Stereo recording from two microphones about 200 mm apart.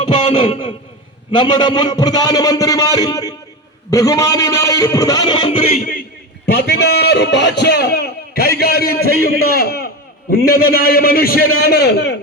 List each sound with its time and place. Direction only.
0.0 s a sound: 30° left (ahead or behind)
1.3 s a man's voice: 25° left (ahead or behind)
6.4 s a man's voice: 50° left (ahead or behind)